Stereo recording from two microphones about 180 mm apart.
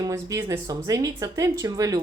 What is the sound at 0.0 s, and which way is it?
A woman's voice, 20° right (ahead or behind).